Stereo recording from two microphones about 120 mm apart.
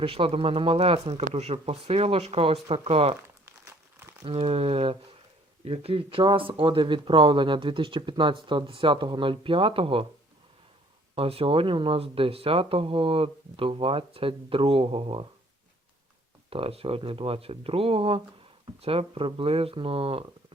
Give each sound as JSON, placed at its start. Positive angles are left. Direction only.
{"t": 0.0, "sound": "speech", "side_deg": -50}
{"t": 3.4, "sound": "crumpling", "side_deg": -20}
{"t": 4.3, "sound": "speech", "side_deg": -55}
{"t": 11.1, "sound": "speech", "side_deg": -50}
{"t": 16.5, "sound": "speech", "side_deg": -50}